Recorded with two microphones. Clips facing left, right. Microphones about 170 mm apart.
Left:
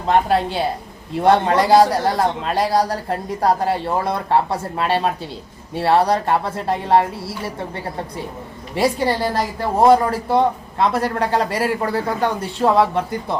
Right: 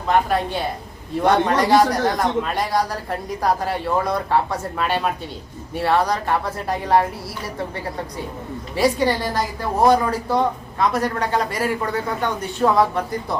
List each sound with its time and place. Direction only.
0.1 s speech: 30° left (ahead or behind)
8.7 s speech: 30° left (ahead or behind)